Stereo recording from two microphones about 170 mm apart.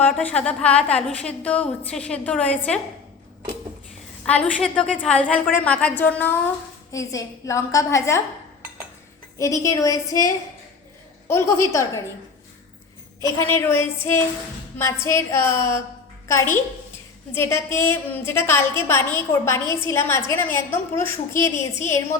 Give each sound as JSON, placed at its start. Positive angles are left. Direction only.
{"t": 0.0, "sound": "a woman's voice", "side_deg": 10}
{"t": 4.3, "sound": "a woman's voice", "side_deg": 5}
{"t": 9.4, "sound": "a woman's voice", "side_deg": 20}
{"t": 13.5, "sound": "a woman's voice", "side_deg": 15}